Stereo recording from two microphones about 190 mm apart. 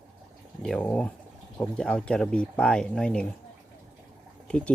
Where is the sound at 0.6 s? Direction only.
5° left (ahead or behind).